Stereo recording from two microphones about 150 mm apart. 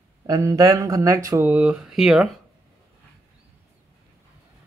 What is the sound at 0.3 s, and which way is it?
Speech, 25° right (ahead or behind).